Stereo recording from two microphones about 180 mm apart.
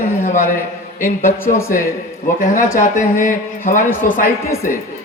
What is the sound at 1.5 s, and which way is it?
Speech, 50° left (ahead or behind).